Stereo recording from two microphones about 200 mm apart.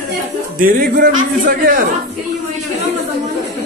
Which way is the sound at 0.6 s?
45° right (ahead or behind).